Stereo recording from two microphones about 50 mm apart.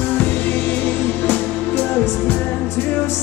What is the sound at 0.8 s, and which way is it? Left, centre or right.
Music, left.